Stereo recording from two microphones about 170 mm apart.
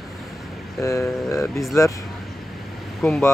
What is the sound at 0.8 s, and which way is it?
Speech, 15° left (ahead or behind).